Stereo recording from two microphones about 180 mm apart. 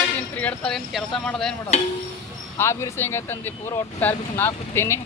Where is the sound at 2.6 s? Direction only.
15° left (ahead or behind).